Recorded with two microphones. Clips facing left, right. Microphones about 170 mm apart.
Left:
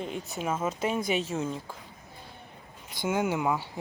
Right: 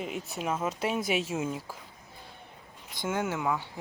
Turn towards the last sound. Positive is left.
turn(degrees=15)  # may be behind; listen again after turning